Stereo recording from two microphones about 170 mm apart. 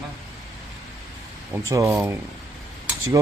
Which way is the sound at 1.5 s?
20° right (ahead or behind).